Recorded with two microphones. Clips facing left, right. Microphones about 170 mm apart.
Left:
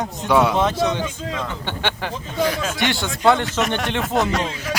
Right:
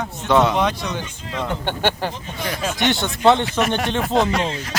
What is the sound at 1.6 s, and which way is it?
Speech, 40° right (ahead or behind).